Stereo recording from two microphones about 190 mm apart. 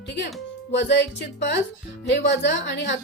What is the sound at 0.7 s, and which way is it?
A woman's voice, 65° left (ahead or behind).